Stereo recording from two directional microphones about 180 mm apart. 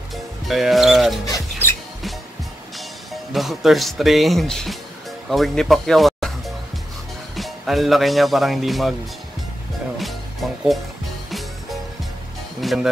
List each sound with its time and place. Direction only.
0.5 s speech: centre (ahead or behind)
1.2 s music: 15° left (ahead or behind)
3.1 s speech: centre (ahead or behind)
7.3 s speech: centre (ahead or behind)
9.9 s music: centre (ahead or behind)